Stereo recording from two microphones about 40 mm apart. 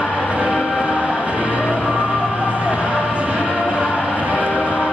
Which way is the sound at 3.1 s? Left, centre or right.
Right.